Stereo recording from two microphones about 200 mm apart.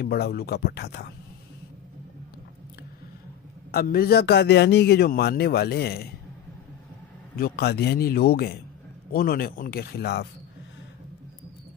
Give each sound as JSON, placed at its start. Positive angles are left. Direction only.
{"t": 0.0, "sound": "a man's voice", "side_deg": 50}
{"t": 3.7, "sound": "a man's voice", "side_deg": 50}
{"t": 7.3, "sound": "a man's voice", "side_deg": 50}